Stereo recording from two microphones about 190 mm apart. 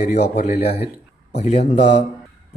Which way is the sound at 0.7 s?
60° left (ahead or behind).